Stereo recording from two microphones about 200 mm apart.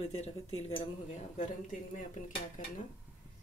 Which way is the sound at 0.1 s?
30° left (ahead or behind).